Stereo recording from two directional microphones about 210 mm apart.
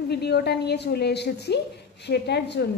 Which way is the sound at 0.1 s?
50° left (ahead or behind).